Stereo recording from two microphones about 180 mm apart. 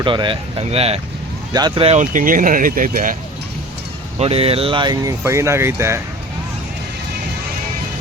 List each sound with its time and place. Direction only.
0.0 s speech: 25° right (ahead or behind); by 3.2 s 50° right (ahead or behind)
4.2 s speech: 35° right (ahead or behind); by 6.0 s 15° right (ahead or behind)